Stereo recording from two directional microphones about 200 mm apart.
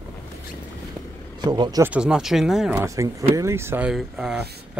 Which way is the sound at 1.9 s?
5° right (ahead or behind).